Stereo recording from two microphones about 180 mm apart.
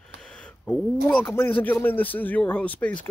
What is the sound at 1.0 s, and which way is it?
Speech, 10° left (ahead or behind).